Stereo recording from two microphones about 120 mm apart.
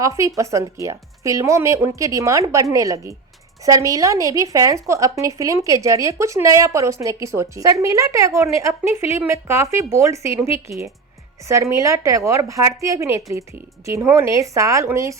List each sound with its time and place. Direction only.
0.0 s a woman's voice: 25° right (ahead or behind)